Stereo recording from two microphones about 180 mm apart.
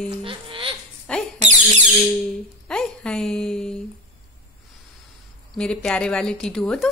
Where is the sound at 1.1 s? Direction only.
5° left (ahead or behind).